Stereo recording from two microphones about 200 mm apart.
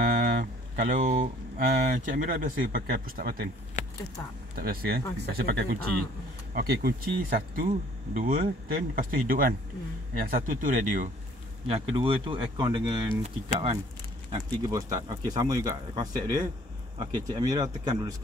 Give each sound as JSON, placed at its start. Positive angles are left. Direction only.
{"t": 0.0, "sound": "a sound", "side_deg": -45}
{"t": 1.9, "sound": "speech", "side_deg": -40}
{"t": 4.6, "sound": "speech", "side_deg": -50}
{"t": 11.6, "sound": "speech", "side_deg": -30}
{"t": 14.7, "sound": "speech", "side_deg": -20}